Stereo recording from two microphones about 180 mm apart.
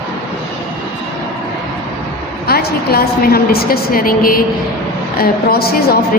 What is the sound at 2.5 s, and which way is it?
A woman's voice, 60° left (ahead or behind).